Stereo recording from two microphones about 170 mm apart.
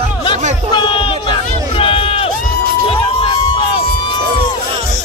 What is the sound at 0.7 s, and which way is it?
Run, 30° left (ahead or behind).